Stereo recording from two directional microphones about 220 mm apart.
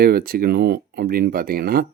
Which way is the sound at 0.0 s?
40° right (ahead or behind).